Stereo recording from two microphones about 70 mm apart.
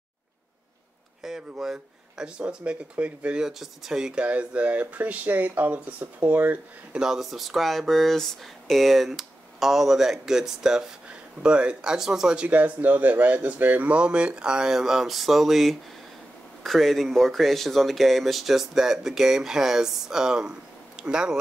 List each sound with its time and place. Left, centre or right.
1.2 s speech: centre; by 6.6 s right
6.9 s speech: centre
12.4 s speech: right